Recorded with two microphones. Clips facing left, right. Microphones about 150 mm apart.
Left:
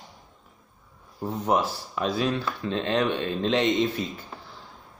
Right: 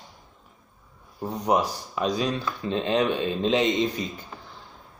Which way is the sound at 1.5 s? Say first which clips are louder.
Right 1 dB; 15° right (ahead or behind).